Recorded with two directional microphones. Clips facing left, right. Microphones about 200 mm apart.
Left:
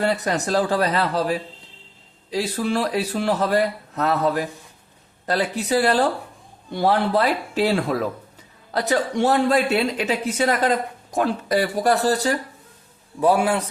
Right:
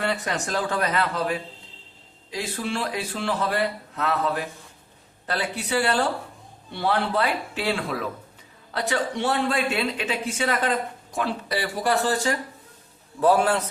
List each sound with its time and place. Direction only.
0.0 s speech: 40° left (ahead or behind)
13.1 s a man's voice: 15° left (ahead or behind)